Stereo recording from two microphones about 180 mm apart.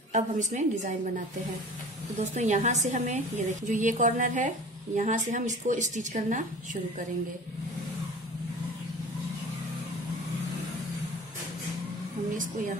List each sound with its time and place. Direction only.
0.1 s a woman's voice: 45° right (ahead or behind)
2.3 s a woman's voice: 40° right (ahead or behind)